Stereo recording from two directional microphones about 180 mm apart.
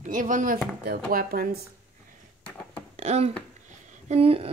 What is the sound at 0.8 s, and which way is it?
Speech, 55° right (ahead or behind).